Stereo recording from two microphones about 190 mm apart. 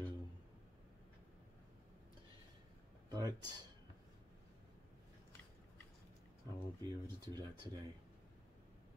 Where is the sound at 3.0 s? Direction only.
20° right (ahead or behind).